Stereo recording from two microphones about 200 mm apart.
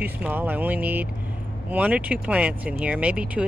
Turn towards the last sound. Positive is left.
turn(degrees=-5)  # may be behind; listen again after turning